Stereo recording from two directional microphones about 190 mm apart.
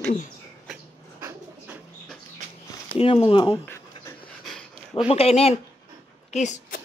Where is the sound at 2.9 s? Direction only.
30° left (ahead or behind).